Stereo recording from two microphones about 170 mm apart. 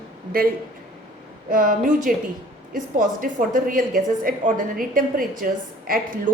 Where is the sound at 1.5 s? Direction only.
55° right (ahead or behind).